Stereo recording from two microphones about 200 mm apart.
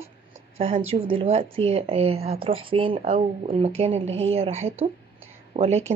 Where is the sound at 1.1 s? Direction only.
30° right (ahead or behind).